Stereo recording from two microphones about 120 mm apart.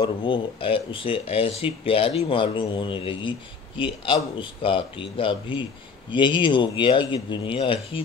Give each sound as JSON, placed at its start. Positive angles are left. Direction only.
{"t": 0.0, "sound": "speech", "side_deg": 45}